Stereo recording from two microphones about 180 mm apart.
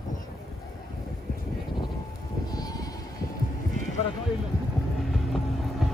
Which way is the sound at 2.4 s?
20° left (ahead or behind).